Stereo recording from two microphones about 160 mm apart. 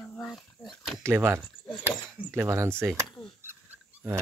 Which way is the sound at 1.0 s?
15° right (ahead or behind).